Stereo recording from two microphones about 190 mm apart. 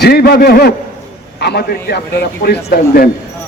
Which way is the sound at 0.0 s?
55° left (ahead or behind).